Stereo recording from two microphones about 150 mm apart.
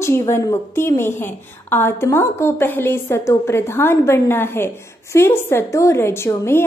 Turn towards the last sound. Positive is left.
turn(degrees=20)  # may be behind; listen again after turning